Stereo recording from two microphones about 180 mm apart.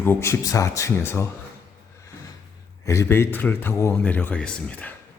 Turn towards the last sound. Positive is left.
turn(degrees=5)  # may be behind; listen again after turning